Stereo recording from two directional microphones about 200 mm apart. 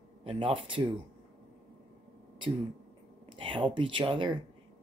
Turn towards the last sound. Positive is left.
turn(degrees=-25)  # may be behind; listen again after turning